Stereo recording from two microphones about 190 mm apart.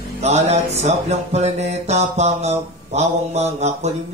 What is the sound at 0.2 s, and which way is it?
Music, 35° right (ahead or behind).